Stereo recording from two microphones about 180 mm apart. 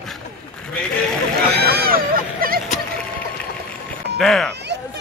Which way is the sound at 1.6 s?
55° right (ahead or behind).